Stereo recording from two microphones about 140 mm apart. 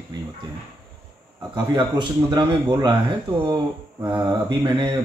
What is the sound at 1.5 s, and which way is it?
Speech, 30° right (ahead or behind).